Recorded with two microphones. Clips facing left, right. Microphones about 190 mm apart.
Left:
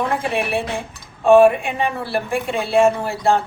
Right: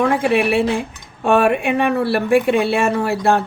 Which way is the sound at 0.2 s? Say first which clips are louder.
Right 6 dB; 70° right (ahead or behind).